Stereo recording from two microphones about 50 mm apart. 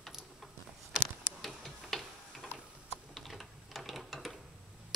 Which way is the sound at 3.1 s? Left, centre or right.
Centre.